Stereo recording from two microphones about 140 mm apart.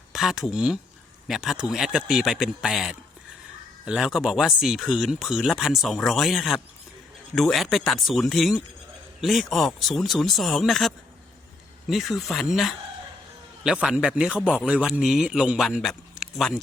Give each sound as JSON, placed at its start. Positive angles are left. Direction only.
{"t": 0.1, "sound": "speech", "side_deg": 0}
{"t": 13.8, "sound": "speech", "side_deg": -5}
{"t": 16.2, "sound": "a sound", "side_deg": -5}